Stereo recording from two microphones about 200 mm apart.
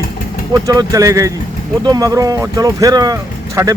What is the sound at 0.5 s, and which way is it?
Speech, 15° right (ahead or behind).